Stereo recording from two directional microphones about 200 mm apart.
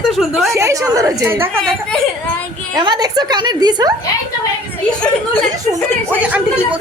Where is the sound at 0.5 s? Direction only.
15° right (ahead or behind).